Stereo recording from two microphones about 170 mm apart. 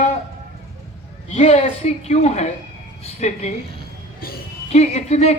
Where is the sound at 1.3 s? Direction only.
40° left (ahead or behind).